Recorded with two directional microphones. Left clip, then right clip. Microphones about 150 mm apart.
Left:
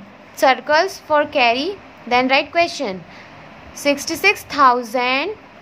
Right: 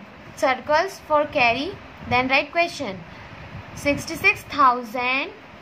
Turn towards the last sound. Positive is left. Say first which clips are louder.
# left 5 dB
turn(degrees=30)  # may be behind; listen again after turning